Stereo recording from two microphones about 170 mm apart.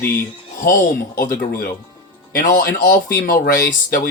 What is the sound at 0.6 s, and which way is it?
Speech, 65° left (ahead or behind).